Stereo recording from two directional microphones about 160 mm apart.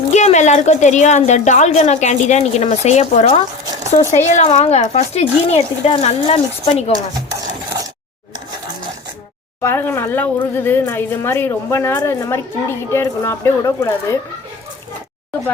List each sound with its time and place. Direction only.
0.1 s a woman's voice: 45° left (ahead or behind)
9.6 s speech: 15° left (ahead or behind)